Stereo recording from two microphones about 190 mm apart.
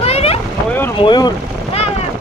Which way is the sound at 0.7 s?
10° left (ahead or behind).